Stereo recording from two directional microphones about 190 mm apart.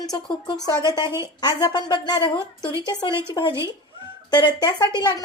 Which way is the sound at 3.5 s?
15° right (ahead or behind).